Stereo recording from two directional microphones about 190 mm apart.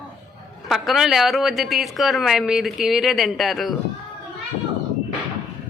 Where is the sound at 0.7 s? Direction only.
Centre (ahead or behind).